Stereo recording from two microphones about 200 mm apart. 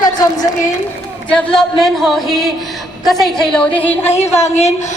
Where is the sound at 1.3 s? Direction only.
5° left (ahead or behind).